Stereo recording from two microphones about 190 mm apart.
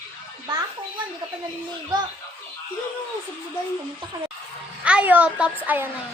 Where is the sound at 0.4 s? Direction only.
25° right (ahead or behind).